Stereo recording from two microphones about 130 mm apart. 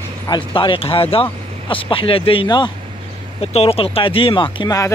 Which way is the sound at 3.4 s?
50° left (ahead or behind).